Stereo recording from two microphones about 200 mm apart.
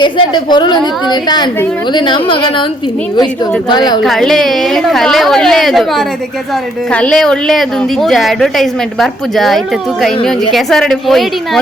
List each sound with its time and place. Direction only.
0.0 s a woman's voice: 20° left (ahead or behind)
1.9 s a woman's voice: 25° left (ahead or behind)
3.7 s a woman's voice: 20° left (ahead or behind)
4.0 s a woman's voice: centre (ahead or behind)
6.9 s a woman's voice: 5° left (ahead or behind)